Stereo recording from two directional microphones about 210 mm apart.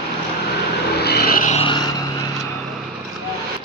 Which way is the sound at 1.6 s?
20° left (ahead or behind).